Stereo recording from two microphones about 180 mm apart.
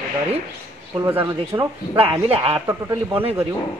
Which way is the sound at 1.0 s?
15° right (ahead or behind).